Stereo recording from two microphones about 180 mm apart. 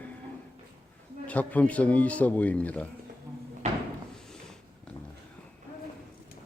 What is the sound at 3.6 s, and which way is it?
Door, 40° right (ahead or behind).